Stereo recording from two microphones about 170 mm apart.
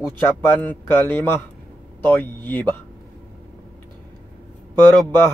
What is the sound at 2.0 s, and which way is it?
Speech, 10° left (ahead or behind).